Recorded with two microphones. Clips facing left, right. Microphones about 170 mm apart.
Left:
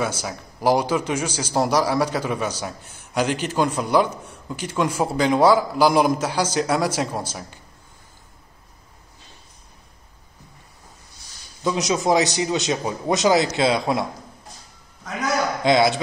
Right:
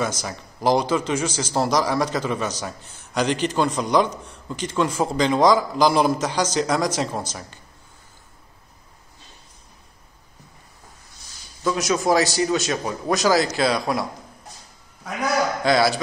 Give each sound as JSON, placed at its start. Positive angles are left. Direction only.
{"t": 0.0, "sound": "a man's voice", "side_deg": 10}
{"t": 11.6, "sound": "a man's voice", "side_deg": 20}
{"t": 15.6, "sound": "a man's voice", "side_deg": 20}